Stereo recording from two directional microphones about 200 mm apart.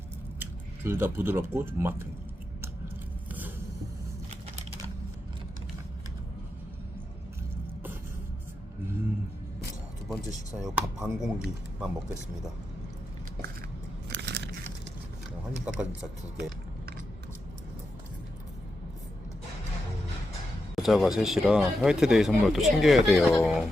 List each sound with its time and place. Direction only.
0.9 s speech: 10° right (ahead or behind)
3.2 s biting: 10° right (ahead or behind)
10.1 s speech: centre (ahead or behind)
14.1 s biting: 55° right (ahead or behind)
20.7 s speech: centre (ahead or behind)